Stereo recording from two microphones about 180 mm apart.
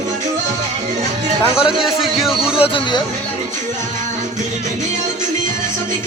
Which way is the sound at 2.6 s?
25° left (ahead or behind).